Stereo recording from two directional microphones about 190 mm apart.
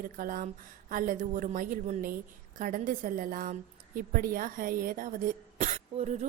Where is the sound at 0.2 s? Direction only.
45° right (ahead or behind).